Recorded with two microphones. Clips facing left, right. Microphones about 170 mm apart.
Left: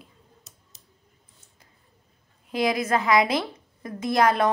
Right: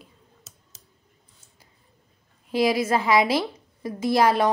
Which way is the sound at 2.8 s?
25° right (ahead or behind).